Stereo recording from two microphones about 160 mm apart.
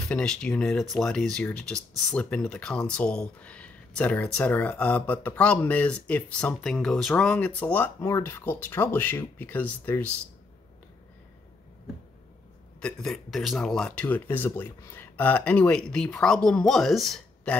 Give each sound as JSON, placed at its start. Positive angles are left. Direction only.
{"t": 0.1, "sound": "speech", "side_deg": 5}
{"t": 12.8, "sound": "speech", "side_deg": 5}